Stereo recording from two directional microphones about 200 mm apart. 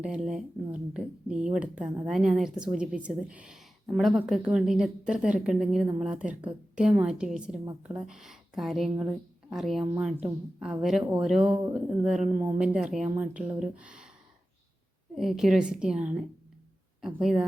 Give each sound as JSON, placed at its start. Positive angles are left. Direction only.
{"t": 0.0, "sound": "speech", "side_deg": -5}
{"t": 7.6, "sound": "speech", "side_deg": -15}
{"t": 7.9, "sound": "speech", "side_deg": 0}
{"t": 15.1, "sound": "speech", "side_deg": 0}